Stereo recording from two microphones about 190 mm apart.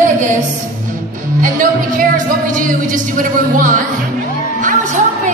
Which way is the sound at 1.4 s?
45° right (ahead or behind).